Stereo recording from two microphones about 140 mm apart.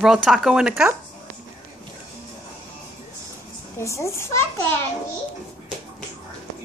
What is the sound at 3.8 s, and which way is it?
Speech, 20° left (ahead or behind).